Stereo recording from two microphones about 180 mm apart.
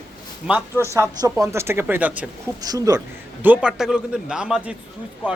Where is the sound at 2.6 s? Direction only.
20° right (ahead or behind).